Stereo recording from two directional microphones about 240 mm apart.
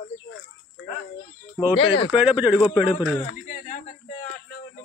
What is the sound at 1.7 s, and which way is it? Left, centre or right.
Speech, left.